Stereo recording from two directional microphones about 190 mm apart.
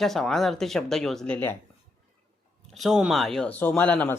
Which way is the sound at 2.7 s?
Centre (ahead or behind).